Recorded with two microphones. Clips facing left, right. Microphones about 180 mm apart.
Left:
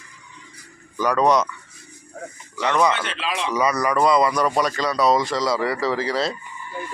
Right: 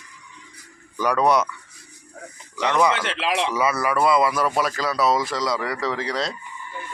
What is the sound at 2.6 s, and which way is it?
Speech, 10° right (ahead or behind).